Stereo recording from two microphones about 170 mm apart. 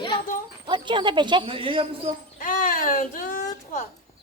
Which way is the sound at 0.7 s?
30° right (ahead or behind).